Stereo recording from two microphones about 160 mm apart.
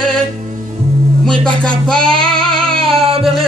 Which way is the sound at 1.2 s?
5° left (ahead or behind).